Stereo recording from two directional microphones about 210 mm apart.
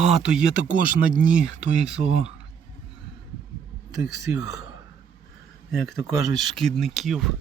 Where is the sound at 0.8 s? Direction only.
40° right (ahead or behind).